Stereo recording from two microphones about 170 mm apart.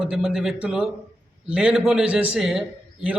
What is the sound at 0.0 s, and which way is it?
A man's voice, 5° right (ahead or behind).